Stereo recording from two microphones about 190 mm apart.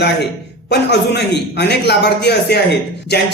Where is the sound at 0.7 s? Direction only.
60° left (ahead or behind).